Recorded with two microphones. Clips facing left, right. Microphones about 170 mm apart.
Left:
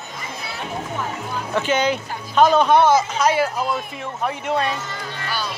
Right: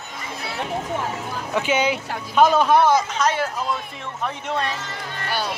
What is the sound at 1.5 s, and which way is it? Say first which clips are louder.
A man's voice: left 1 dB; 10° right (ahead or behind).